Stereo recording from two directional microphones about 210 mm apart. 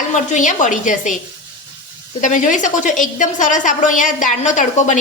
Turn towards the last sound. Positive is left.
turn(degrees=35)  # may be behind; listen again after turning